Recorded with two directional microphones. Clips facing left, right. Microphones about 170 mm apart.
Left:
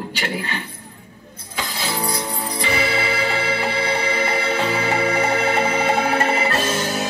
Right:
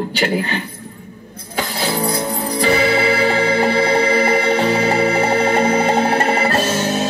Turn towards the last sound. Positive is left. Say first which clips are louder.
# right 4 dB
turn(degrees=-30)  # may be behind; listen again after turning